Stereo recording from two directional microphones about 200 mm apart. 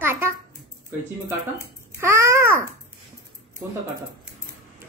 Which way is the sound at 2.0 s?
15° right (ahead or behind).